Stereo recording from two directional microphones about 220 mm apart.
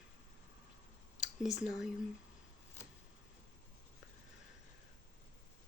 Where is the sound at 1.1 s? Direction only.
Centre (ahead or behind).